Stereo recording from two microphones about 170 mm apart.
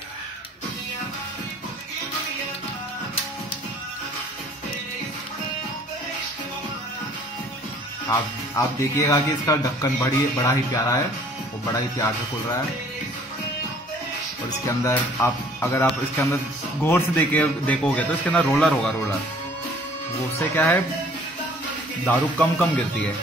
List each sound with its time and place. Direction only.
8.1 s speech: 20° left (ahead or behind)
14.8 s a man's voice: 15° left (ahead or behind)
20.3 s a man's voice: 10° left (ahead or behind)
22.0 s a man's voice: 5° left (ahead or behind)